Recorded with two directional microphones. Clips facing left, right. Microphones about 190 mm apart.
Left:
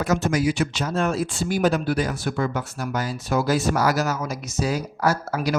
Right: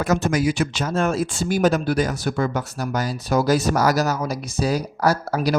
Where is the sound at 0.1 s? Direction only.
50° right (ahead or behind).